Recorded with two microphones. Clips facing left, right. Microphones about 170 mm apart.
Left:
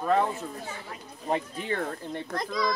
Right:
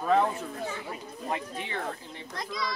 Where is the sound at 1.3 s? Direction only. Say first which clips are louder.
Left 5 dB; 45° left (ahead or behind).